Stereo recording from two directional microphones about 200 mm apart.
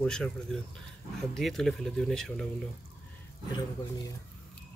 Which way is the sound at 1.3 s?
Centre (ahead or behind).